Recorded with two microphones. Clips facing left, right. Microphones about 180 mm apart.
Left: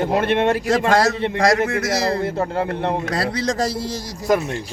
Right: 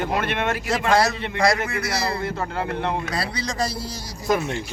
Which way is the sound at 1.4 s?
45° left (ahead or behind).